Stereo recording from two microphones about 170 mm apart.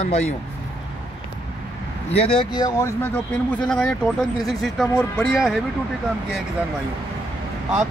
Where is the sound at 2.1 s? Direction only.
35° left (ahead or behind).